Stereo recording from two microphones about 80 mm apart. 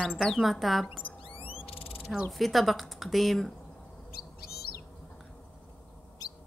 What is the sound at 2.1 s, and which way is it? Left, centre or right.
Speech, centre.